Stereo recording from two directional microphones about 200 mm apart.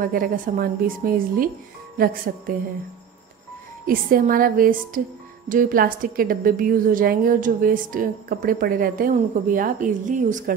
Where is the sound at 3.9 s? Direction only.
45° right (ahead or behind).